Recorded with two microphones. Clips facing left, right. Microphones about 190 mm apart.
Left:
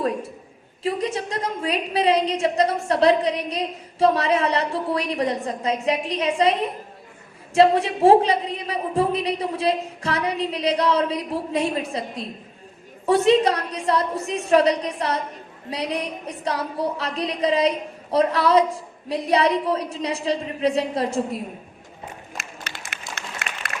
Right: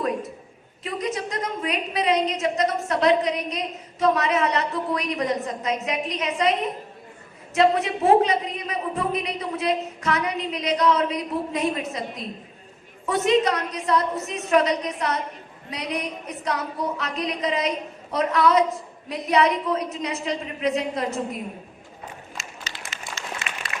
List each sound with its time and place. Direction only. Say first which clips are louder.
0.8 s a woman's voice: left 3 dB; 30° left (ahead or behind)
13.1 s a woman's voice: left 4 dB; 30° left (ahead or behind)
22.4 s a sound: left 2 dB; 60° left (ahead or behind)
23.2 s applause: even; 60° left (ahead or behind)